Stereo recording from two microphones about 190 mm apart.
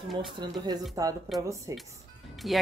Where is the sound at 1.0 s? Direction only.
20° right (ahead or behind).